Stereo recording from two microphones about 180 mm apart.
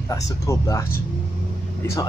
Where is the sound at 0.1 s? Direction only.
20° left (ahead or behind).